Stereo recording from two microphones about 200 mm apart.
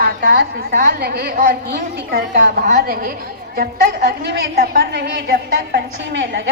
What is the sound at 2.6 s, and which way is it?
Speech, 40° right (ahead or behind).